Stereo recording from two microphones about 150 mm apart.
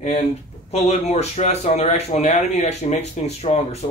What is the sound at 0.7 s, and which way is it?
Speech, 45° left (ahead or behind).